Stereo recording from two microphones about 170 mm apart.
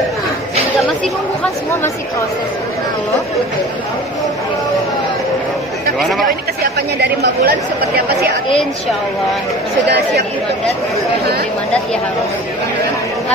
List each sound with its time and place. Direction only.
0.7 s chatter: centre (ahead or behind)
5.9 s speech: centre (ahead or behind)
6.2 s speech: 70° right (ahead or behind)
9.8 s speech: 70° right (ahead or behind)